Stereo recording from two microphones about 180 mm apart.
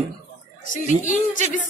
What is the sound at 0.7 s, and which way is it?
Speech, 45° left (ahead or behind).